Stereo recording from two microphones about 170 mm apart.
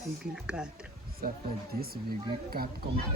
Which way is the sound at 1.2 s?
60° right (ahead or behind).